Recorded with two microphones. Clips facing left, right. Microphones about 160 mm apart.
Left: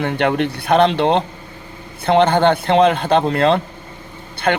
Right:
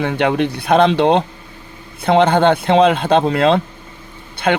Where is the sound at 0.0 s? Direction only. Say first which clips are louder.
Right 1 dB; 15° right (ahead or behind).